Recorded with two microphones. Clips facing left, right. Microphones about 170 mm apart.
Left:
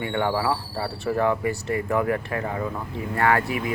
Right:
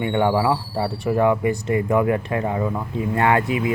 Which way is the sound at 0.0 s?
20° right (ahead or behind).